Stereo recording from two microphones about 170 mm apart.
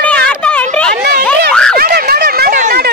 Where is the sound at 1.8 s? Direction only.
65° right (ahead or behind).